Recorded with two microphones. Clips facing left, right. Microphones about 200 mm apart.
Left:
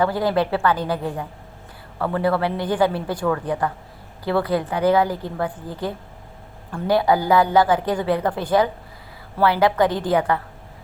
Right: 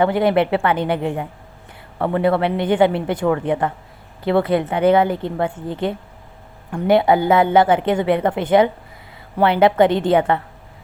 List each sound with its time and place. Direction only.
0.0 s a woman's voice: 20° right (ahead or behind)